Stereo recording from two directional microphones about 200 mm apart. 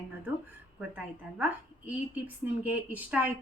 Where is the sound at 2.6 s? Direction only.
10° right (ahead or behind).